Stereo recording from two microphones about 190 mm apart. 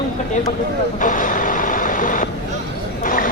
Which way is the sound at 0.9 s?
45° left (ahead or behind).